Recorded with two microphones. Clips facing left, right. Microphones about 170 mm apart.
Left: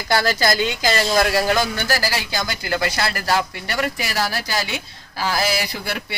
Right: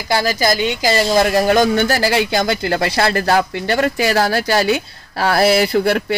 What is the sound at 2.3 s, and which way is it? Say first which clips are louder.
Speech: right 7 dB; 55° right (ahead or behind).